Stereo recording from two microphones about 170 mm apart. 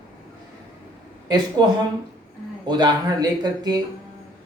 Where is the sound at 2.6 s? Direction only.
25° right (ahead or behind).